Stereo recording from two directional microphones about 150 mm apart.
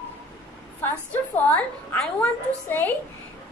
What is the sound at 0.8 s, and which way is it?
A child's voice, 15° left (ahead or behind).